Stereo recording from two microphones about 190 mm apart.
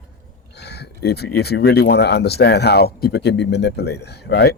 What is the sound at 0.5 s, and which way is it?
Speech, 60° left (ahead or behind).